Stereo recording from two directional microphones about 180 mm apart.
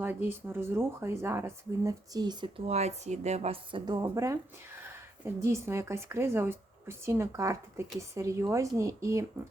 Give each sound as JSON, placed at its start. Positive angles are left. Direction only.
{"t": 0.0, "sound": "a woman's voice", "side_deg": -10}